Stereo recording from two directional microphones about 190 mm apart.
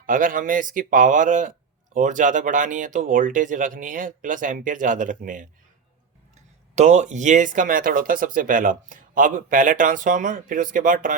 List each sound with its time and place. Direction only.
0.0 s speech: 45° right (ahead or behind)
6.7 s speech: 35° right (ahead or behind)